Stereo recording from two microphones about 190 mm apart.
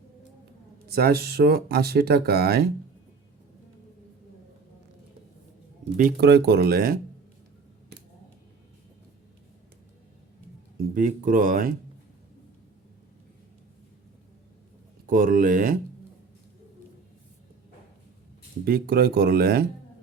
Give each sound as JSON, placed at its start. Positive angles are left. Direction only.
{"t": 0.9, "sound": "speech", "side_deg": -55}
{"t": 6.0, "sound": "speech", "side_deg": -50}
{"t": 10.8, "sound": "speech", "side_deg": -45}
{"t": 15.0, "sound": "speech", "side_deg": -45}
{"t": 18.6, "sound": "speech", "side_deg": -55}